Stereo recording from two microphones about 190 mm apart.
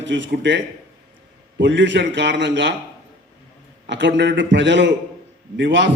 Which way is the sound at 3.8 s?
70° right (ahead or behind).